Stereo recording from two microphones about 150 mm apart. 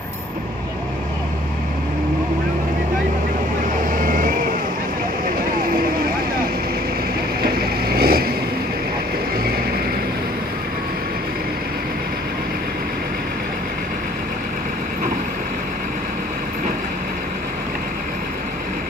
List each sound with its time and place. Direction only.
3.9 s vehicle: 65° right (ahead or behind)
7.4 s vehicle: 90° right